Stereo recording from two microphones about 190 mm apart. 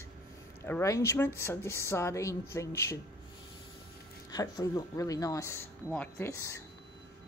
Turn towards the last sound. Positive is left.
turn(degrees=15)  # may be behind; listen again after turning